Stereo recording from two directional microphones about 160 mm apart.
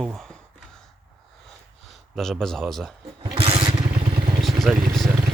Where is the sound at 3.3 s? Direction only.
35° right (ahead or behind).